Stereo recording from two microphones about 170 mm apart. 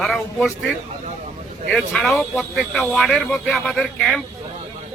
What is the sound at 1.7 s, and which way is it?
Speech, centre (ahead or behind).